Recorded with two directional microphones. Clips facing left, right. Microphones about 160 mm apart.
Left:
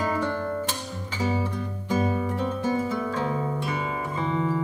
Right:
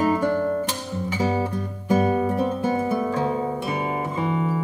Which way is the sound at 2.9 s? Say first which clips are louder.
Right 4 dB; 25° right (ahead or behind).